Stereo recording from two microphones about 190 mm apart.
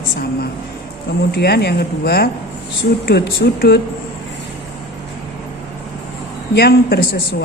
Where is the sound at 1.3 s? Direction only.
55° left (ahead or behind).